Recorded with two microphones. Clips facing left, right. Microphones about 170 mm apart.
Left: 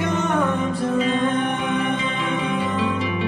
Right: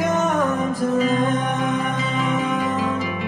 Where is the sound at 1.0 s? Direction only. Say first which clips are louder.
Right 2 dB; 40° right (ahead or behind).